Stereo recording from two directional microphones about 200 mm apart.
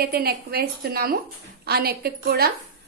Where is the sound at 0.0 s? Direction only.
50° right (ahead or behind).